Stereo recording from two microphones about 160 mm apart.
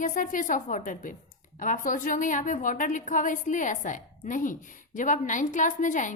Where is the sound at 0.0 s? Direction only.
55° left (ahead or behind).